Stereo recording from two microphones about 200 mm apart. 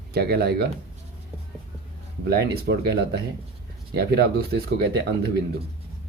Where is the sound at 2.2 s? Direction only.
55° right (ahead or behind).